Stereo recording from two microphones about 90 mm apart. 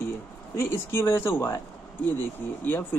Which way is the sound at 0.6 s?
25° left (ahead or behind).